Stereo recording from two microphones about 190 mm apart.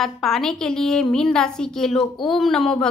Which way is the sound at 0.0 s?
Centre (ahead or behind).